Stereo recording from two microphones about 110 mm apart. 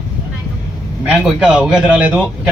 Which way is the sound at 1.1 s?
5° right (ahead or behind).